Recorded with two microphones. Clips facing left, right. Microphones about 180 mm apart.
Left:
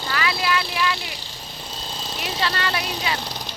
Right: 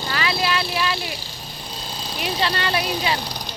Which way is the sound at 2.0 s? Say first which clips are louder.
Right 4 dB; 25° left (ahead or behind).